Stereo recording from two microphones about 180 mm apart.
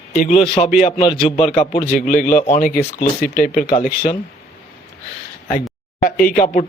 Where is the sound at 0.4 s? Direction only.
30° left (ahead or behind).